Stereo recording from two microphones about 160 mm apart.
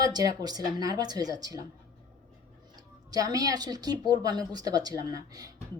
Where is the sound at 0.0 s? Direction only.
25° right (ahead or behind).